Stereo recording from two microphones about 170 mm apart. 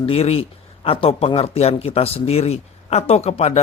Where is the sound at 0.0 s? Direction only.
35° left (ahead or behind).